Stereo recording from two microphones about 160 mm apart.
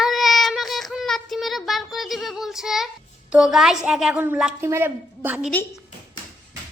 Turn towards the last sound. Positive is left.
turn(degrees=-10)  # may be behind; listen again after turning